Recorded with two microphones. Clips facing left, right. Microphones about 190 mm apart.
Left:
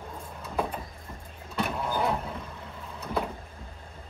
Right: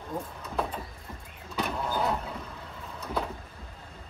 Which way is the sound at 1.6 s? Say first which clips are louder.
Left 1 dB; centre (ahead or behind).